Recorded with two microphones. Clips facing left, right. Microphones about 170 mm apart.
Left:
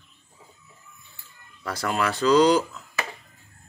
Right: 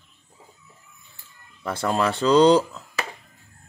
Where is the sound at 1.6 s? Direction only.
25° right (ahead or behind).